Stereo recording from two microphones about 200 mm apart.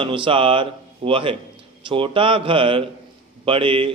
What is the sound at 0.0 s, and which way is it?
A man's voice, 25° right (ahead or behind).